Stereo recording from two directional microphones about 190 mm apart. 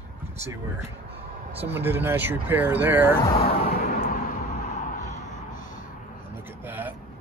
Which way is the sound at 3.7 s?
55° left (ahead or behind).